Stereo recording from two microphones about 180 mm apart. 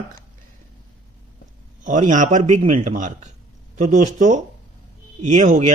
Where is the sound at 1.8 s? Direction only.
45° right (ahead or behind).